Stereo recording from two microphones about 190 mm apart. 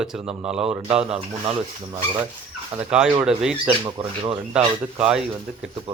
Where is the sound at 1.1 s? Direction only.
30° right (ahead or behind).